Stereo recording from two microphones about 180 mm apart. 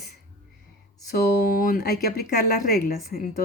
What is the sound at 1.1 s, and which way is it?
Speech, 60° left (ahead or behind).